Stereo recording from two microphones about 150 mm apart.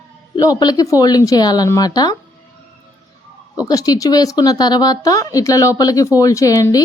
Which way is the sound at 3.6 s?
25° left (ahead or behind).